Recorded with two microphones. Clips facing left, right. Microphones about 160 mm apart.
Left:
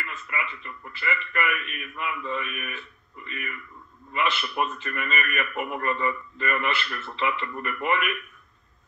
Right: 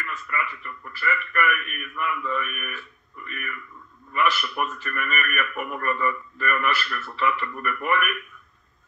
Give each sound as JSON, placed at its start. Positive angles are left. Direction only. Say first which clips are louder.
{"t": 0.0, "sound": "a man's voice", "louder": "right 3 dB", "side_deg": 20}